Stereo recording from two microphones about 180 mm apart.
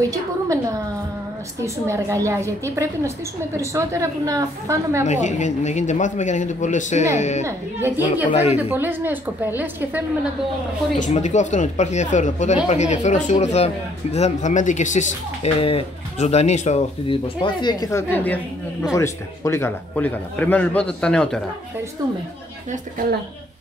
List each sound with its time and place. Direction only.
0.0 s a woman's voice: 20° right (ahead or behind)
5.0 s speech: 40° left (ahead or behind)
7.4 s a woman's voice: 15° right (ahead or behind)
8.3 s speech: 40° left (ahead or behind)
8.6 s a woman's voice: 10° right (ahead or behind)
11.0 s a man's voice: 40° left (ahead or behind); by 21.4 s 5° left (ahead or behind)